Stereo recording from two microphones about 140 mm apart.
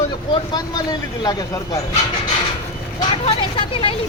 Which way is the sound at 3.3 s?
40° left (ahead or behind).